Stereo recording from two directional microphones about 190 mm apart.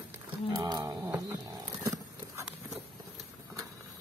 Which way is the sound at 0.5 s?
20° right (ahead or behind).